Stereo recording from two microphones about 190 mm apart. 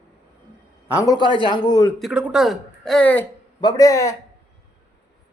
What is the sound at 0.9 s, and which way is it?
Speech, 20° left (ahead or behind).